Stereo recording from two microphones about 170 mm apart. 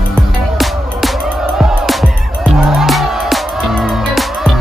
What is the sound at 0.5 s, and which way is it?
Music, centre (ahead or behind).